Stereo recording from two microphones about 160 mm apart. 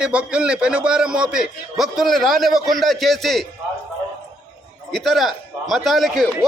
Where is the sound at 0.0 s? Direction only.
5° right (ahead or behind).